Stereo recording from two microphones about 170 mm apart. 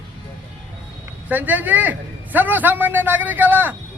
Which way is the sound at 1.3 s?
10° right (ahead or behind).